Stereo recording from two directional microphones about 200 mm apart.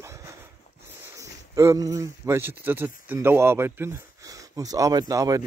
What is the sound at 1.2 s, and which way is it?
Speech, 15° right (ahead or behind).